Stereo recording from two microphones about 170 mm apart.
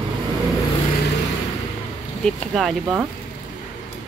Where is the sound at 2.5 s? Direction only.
Centre (ahead or behind).